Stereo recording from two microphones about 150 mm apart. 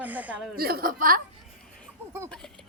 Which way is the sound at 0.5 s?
85° right.